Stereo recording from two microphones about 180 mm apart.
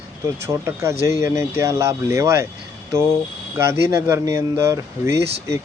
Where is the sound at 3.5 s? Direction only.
15° right (ahead or behind).